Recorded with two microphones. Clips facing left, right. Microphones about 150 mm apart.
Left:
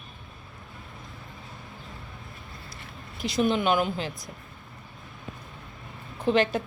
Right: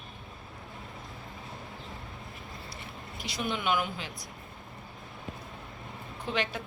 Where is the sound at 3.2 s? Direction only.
35° left (ahead or behind).